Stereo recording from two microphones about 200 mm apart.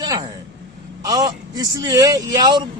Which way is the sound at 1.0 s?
20° right (ahead or behind).